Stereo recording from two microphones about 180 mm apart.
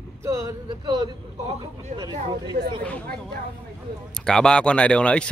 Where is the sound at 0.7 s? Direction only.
25° right (ahead or behind).